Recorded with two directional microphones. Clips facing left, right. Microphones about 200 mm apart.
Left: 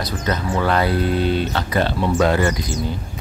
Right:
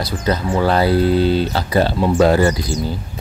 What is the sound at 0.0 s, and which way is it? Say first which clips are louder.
Speech: right 3 dB; 30° right (ahead or behind).